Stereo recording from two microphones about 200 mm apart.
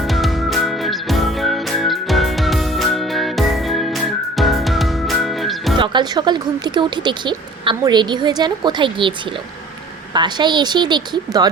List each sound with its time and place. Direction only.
0.1 s music: centre (ahead or behind)
5.7 s speech: 25° right (ahead or behind)